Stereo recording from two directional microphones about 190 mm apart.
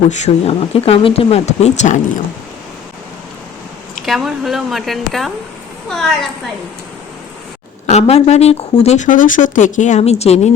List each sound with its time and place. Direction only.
0.1 s a woman's voice: 35° left (ahead or behind)
4.0 s a woman's voice: centre (ahead or behind)
7.9 s a woman's voice: 35° left (ahead or behind)